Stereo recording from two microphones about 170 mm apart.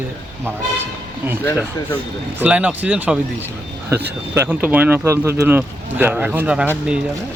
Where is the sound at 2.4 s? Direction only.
10° right (ahead or behind).